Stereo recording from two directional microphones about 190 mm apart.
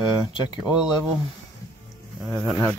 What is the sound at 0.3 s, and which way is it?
Speech, 25° left (ahead or behind).